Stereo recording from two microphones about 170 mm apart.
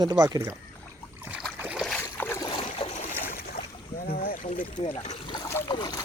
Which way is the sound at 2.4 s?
25° left (ahead or behind).